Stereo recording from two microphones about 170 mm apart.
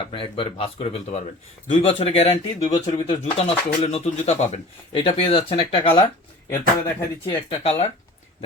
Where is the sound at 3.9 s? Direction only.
40° left (ahead or behind).